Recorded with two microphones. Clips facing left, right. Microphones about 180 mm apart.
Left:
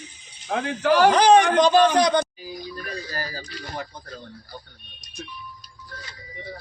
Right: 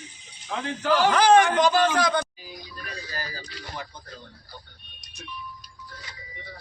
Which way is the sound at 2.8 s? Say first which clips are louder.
Left 2 dB; 40° left (ahead or behind).